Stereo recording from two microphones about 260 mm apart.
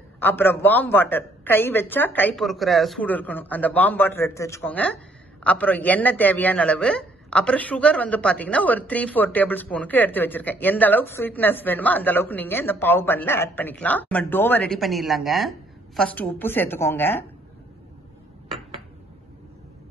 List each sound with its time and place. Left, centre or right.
0.2 s a man's voice: centre